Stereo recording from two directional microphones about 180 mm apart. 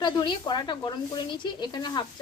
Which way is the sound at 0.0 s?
25° left (ahead or behind).